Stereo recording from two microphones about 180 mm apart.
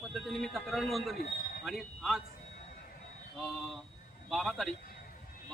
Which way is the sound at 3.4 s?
Centre (ahead or behind).